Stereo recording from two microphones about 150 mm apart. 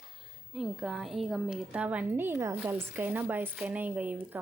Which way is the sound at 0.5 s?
5° right (ahead or behind).